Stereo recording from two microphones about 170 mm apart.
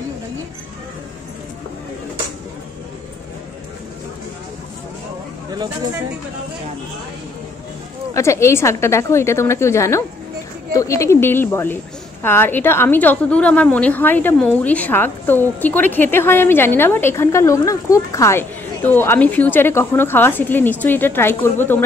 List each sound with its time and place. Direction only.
5.5 s speech: 25° right (ahead or behind)
8.1 s a woman's voice: 15° left (ahead or behind)